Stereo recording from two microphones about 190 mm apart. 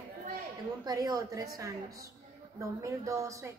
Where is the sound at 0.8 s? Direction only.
20° right (ahead or behind).